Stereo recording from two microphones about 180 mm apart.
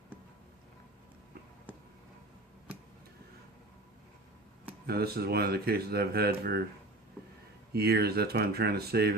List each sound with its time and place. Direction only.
4.9 s speech: 60° right (ahead or behind)
7.7 s speech: 60° right (ahead or behind)